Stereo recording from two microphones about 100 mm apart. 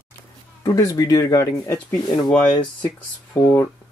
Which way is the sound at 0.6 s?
40° left (ahead or behind).